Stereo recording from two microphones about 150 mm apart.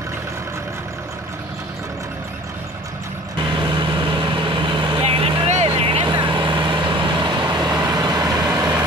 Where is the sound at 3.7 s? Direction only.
35° right (ahead or behind).